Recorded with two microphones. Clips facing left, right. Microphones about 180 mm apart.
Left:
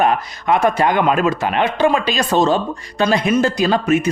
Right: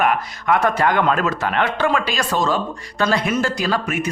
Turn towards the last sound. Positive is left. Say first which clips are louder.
# left 6 dB
turn(degrees=25)  # may be behind; listen again after turning